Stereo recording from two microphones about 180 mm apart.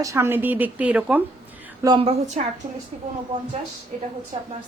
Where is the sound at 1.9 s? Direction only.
30° right (ahead or behind).